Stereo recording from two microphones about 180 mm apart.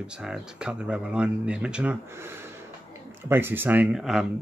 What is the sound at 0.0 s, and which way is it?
Speech, 5° right (ahead or behind).